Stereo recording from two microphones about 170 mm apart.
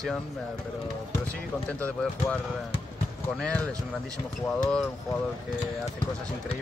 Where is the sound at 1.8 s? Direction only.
5° left (ahead or behind).